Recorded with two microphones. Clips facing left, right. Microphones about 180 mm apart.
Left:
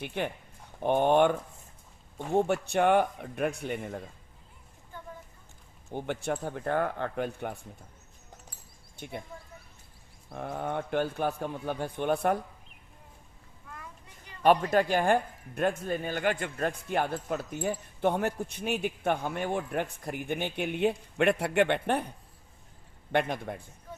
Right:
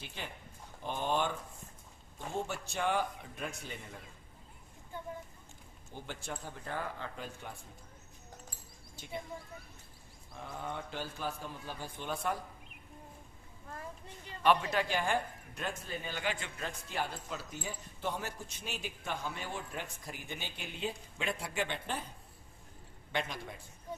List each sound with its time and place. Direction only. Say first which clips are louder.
0.0 s speech: left 12 dB; 60° left (ahead or behind)
5.9 s speech: left 11 dB; 60° left (ahead or behind)
9.0 s speech: left 8 dB; 60° left (ahead or behind)
10.2 s speech: left 8 dB; 60° left (ahead or behind)
14.4 s speech: left 6 dB; 45° left (ahead or behind)
23.1 s speech: left 9 dB; 55° left (ahead or behind)